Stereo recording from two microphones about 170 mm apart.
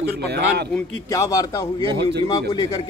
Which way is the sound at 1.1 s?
20° left (ahead or behind).